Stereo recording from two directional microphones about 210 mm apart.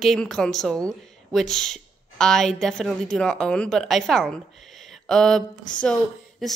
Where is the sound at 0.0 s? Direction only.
Centre (ahead or behind).